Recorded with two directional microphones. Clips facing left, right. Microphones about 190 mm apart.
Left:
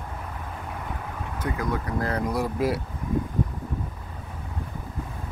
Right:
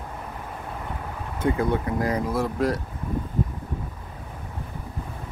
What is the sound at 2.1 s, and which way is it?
Speech, 5° right (ahead or behind).